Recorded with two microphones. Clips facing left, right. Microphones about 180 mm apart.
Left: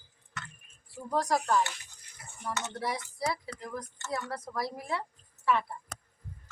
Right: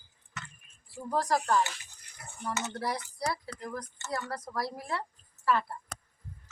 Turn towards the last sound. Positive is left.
turn(degrees=0)  # may be behind; listen again after turning